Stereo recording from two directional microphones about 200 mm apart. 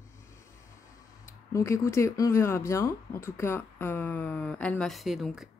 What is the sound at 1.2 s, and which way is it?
Speech, 15° left (ahead or behind).